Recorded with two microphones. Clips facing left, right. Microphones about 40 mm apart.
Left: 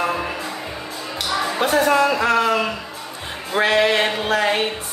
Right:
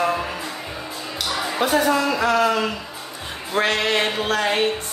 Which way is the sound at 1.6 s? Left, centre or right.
Left.